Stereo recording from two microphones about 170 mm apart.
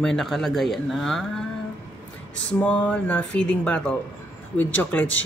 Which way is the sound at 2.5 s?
10° left (ahead or behind).